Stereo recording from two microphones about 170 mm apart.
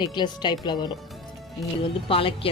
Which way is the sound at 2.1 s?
30° left (ahead or behind).